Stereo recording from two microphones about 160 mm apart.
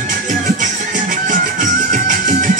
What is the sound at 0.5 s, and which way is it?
Music, 55° right (ahead or behind).